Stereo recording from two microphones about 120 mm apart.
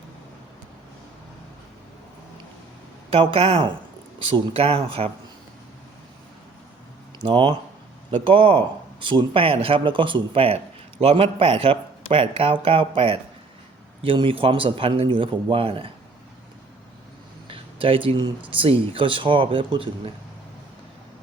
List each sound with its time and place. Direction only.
3.1 s speech: 55° right (ahead or behind)
7.3 s speech: 45° right (ahead or behind)
17.5 s speech: 50° right (ahead or behind)